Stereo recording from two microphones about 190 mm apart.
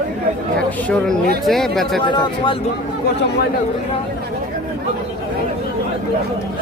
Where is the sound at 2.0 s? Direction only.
25° left (ahead or behind).